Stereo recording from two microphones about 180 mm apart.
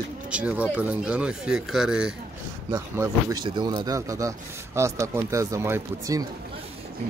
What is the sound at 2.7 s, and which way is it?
Speech, 20° right (ahead or behind).